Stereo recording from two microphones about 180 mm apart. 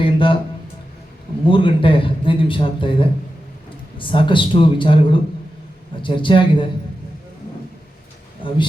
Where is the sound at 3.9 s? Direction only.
30° left (ahead or behind).